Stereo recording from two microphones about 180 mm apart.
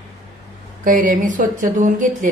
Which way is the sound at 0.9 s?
50° right (ahead or behind).